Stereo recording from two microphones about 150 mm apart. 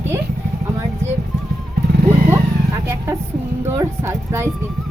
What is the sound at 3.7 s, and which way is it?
Speech, 20° right (ahead or behind).